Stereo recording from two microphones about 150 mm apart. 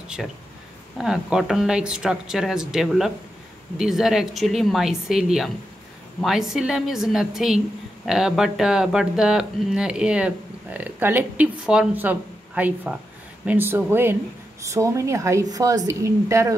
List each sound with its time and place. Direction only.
0.9 s a woman's voice: 5° right (ahead or behind); by 16.5 s 20° right (ahead or behind)